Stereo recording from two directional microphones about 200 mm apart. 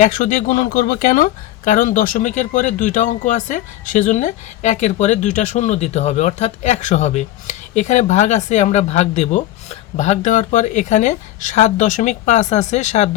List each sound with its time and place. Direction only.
0.0 s speech: 40° left (ahead or behind)